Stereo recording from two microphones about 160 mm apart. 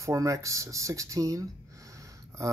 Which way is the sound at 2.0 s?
20° right (ahead or behind).